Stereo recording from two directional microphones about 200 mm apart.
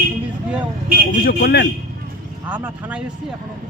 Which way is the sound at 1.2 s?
50° left (ahead or behind).